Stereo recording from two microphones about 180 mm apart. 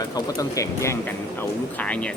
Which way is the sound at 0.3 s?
15° left (ahead or behind).